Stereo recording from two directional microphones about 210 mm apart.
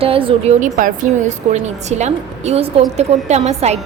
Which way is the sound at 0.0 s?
25° right (ahead or behind).